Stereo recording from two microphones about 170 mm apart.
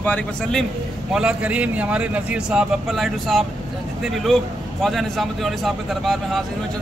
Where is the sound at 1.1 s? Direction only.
5° right (ahead or behind).